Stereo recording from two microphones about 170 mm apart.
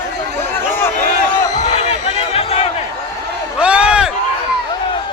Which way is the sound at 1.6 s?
40° left (ahead or behind).